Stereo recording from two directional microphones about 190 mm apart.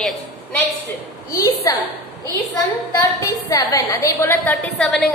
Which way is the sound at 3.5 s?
20° left (ahead or behind).